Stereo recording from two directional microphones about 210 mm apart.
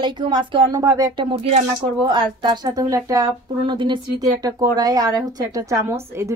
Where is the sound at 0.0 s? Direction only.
20° right (ahead or behind).